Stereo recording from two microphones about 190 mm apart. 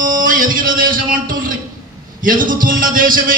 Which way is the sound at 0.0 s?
45° right (ahead or behind).